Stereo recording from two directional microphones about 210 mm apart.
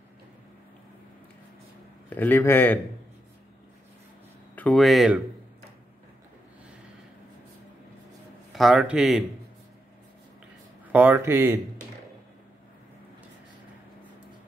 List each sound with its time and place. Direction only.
2.0 s a man's voice: 10° left (ahead or behind)
4.6 s speech: 5° left (ahead or behind)
8.5 s speech: centre (ahead or behind)
10.9 s speech: 10° right (ahead or behind)